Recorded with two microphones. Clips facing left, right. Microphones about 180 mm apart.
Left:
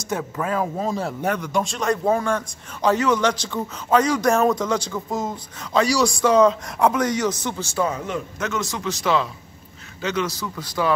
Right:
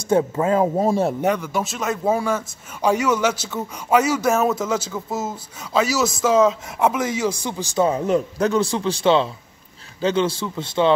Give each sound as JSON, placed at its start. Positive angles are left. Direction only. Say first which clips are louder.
{"t": 0.1, "sound": "speech", "louder": "right 7 dB", "side_deg": -25}
{"t": 1.4, "sound": "a man's voice", "louder": "left 1 dB", "side_deg": -5}
{"t": 7.9, "sound": "a man's voice", "louder": "right 8 dB", "side_deg": -35}